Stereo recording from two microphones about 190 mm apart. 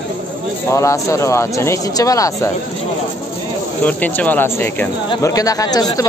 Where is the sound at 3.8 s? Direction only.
10° left (ahead or behind).